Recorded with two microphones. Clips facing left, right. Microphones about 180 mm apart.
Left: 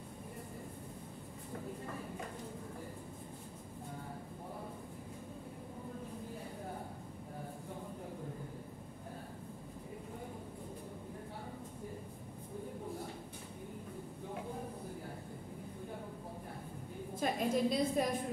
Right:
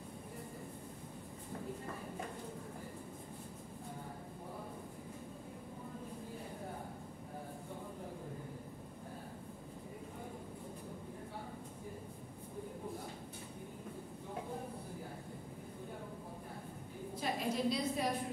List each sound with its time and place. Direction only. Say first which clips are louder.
17.2 s a woman's voice: left 4 dB; 50° left (ahead or behind)